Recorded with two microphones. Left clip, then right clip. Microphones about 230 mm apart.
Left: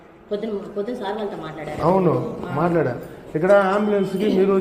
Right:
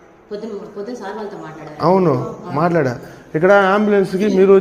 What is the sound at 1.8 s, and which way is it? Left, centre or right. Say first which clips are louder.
A man's voice: right 4 dB; right.